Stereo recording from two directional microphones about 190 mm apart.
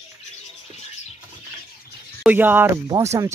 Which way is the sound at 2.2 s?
10° right (ahead or behind).